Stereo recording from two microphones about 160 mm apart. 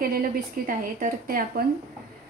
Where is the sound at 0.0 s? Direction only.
65° right (ahead or behind).